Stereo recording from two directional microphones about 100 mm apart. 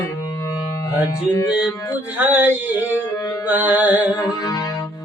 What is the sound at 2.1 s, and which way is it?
Music, 15° right (ahead or behind).